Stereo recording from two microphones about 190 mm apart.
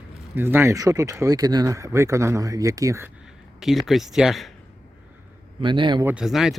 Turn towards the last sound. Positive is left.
turn(degrees=0)  # may be behind; listen again after turning